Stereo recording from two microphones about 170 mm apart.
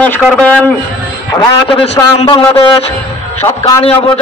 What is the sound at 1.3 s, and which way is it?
A man's voice, 25° left (ahead or behind).